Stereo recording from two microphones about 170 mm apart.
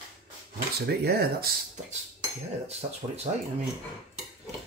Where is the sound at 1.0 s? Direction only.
65° right (ahead or behind).